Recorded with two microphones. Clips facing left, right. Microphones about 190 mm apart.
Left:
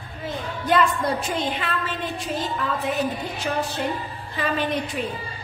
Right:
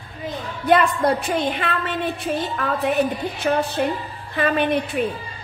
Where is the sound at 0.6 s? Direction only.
60° right (ahead or behind).